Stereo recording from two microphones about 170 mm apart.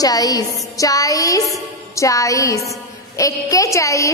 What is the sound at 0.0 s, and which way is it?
A woman's voice, 20° left (ahead or behind).